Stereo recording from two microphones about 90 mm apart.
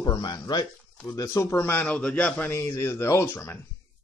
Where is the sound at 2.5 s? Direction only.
30° left (ahead or behind).